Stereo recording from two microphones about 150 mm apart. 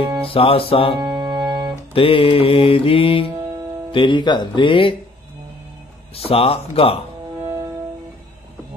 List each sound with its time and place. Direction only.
0.3 s mantra: 40° left (ahead or behind)
0.9 s music: 30° right (ahead or behind)
2.0 s mantra: 40° left (ahead or behind)
6.1 s mantra: 40° left (ahead or behind)
7.4 s music: 20° right (ahead or behind)